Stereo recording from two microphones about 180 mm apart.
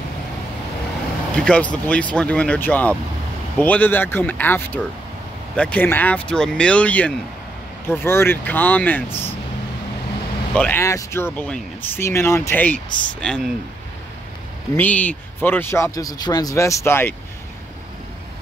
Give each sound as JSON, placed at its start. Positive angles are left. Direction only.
{"t": 1.3, "sound": "speech", "side_deg": 5}
{"t": 9.1, "sound": "speech", "side_deg": 30}
{"t": 10.5, "sound": "speech", "side_deg": 10}
{"t": 14.8, "sound": "speech", "side_deg": 10}